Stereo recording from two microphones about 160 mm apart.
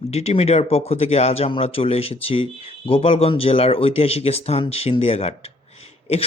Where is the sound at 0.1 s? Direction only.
40° left (ahead or behind).